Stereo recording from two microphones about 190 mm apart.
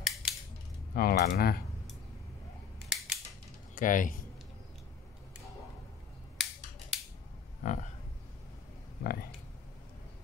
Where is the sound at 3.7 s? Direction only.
45° left (ahead or behind).